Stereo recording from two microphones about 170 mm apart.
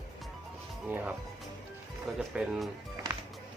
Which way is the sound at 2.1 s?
Centre (ahead or behind).